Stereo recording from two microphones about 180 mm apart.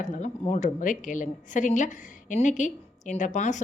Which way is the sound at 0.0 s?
40° left (ahead or behind).